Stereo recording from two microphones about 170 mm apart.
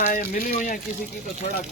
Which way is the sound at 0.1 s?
50° left (ahead or behind).